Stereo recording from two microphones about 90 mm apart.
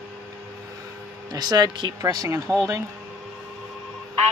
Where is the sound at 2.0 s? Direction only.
40° right (ahead or behind).